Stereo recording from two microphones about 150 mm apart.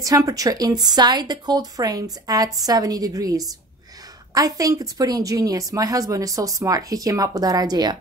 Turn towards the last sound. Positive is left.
turn(degrees=-25)  # may be behind; listen again after turning